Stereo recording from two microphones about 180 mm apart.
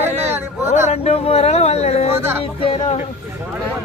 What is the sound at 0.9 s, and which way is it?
Speech, 35° left (ahead or behind).